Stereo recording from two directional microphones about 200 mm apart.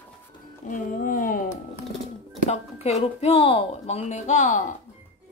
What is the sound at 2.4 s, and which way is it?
A woman's voice, 30° left (ahead or behind).